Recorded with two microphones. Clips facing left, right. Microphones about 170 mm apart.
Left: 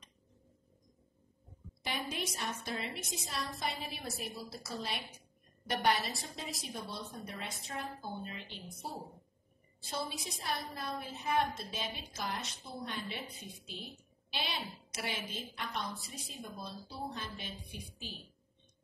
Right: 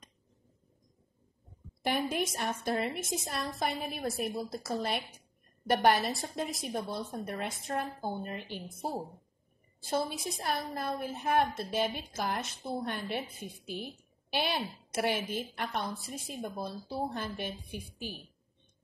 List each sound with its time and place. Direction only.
1.9 s a woman's voice: 50° right (ahead or behind)
10.1 s a woman's voice: 50° right (ahead or behind)